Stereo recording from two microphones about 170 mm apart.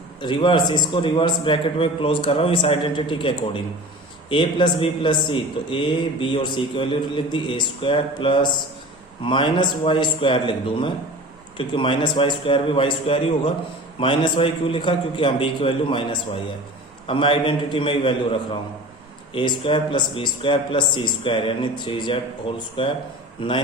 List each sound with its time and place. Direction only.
0.2 s a man's voice: 25° left (ahead or behind)